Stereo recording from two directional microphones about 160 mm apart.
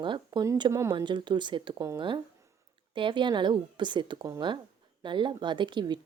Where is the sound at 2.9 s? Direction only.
30° right (ahead or behind).